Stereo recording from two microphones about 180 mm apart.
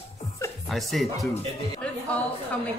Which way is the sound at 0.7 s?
Centre (ahead or behind).